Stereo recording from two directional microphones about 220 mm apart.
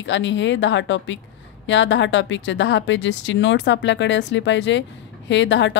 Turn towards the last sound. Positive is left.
turn(degrees=55)  # may be behind; listen again after turning